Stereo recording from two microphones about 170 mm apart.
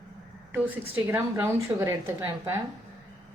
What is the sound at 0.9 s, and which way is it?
A woman's voice, 10° right (ahead or behind).